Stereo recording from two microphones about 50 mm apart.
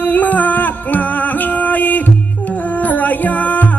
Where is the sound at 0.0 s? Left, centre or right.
Left.